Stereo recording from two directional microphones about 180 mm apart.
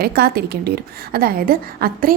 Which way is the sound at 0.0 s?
60° right (ahead or behind).